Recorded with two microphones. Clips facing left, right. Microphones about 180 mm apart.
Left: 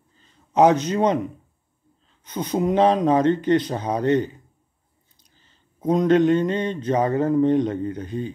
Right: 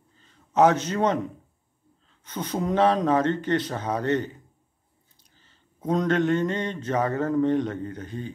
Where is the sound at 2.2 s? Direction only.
15° left (ahead or behind).